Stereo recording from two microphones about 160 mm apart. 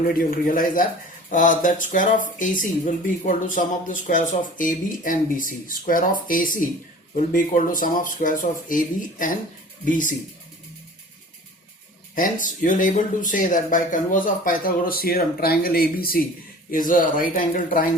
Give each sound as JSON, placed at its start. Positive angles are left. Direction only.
{"t": 0.1, "sound": "speech", "side_deg": 60}
{"t": 12.1, "sound": "speech", "side_deg": 55}
{"t": 16.7, "sound": "speech", "side_deg": 60}